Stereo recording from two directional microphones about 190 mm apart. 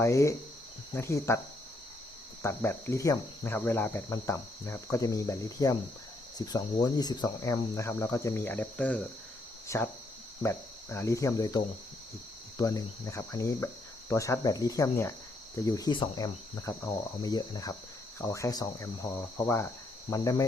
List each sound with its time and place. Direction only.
0.0 s cricket: 15° left (ahead or behind)
2.4 s cricket: 15° left (ahead or behind)
9.6 s speech: 15° left (ahead or behind)
10.4 s cricket: 15° left (ahead or behind)